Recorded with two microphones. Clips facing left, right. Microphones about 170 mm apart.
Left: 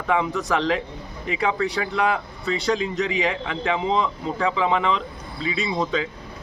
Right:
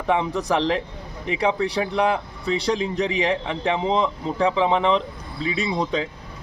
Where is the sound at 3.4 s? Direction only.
25° right (ahead or behind).